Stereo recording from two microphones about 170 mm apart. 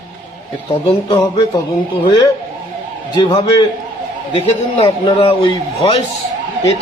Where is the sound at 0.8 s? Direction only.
30° left (ahead or behind).